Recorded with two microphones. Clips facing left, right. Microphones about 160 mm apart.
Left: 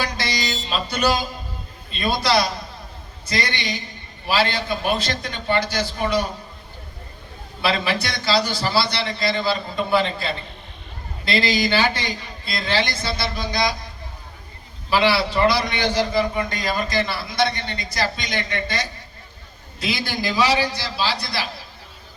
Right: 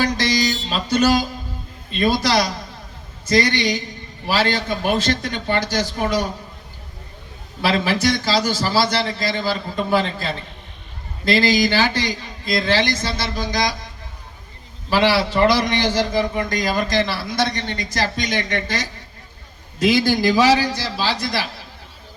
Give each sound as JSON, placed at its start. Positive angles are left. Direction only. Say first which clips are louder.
{"t": 0.0, "sound": "music", "louder": "right 6 dB", "side_deg": -45}
{"t": 2.0, "sound": "a man's voice", "louder": "right 2 dB", "side_deg": -45}
{"t": 7.6, "sound": "a man's voice", "louder": "right 4 dB", "side_deg": -45}
{"t": 11.3, "sound": "a man's voice", "louder": "right 4 dB", "side_deg": -45}
{"t": 14.8, "sound": "a man's voice", "louder": "right 2 dB", "side_deg": -45}
{"t": 19.8, "sound": "a man's voice", "louder": "right 9 dB", "side_deg": -40}